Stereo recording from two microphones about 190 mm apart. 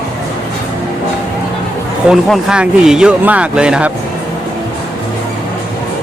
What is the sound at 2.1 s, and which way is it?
Speech, 5° right (ahead or behind).